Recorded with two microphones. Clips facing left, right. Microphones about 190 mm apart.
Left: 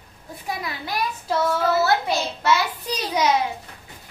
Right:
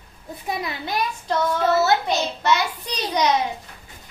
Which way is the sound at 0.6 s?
20° right (ahead or behind).